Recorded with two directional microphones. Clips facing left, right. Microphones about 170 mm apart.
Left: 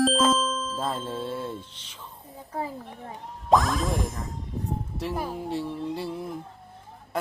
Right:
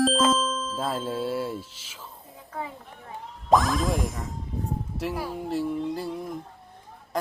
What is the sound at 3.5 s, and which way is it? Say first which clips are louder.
Child singing: right 1 dB; centre (ahead or behind).